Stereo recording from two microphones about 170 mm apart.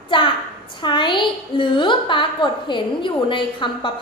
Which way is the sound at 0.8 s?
25° left (ahead or behind).